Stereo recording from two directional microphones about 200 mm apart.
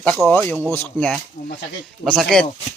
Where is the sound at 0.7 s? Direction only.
5° left (ahead or behind).